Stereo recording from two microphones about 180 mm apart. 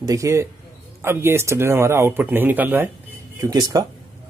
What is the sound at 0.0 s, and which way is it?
Speech, 20° right (ahead or behind).